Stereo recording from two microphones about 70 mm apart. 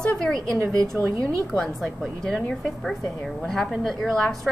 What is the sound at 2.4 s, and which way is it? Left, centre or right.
A woman's voice, centre.